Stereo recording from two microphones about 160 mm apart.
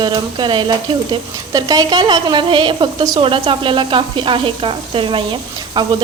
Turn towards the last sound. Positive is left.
turn(degrees=-30)  # may be behind; listen again after turning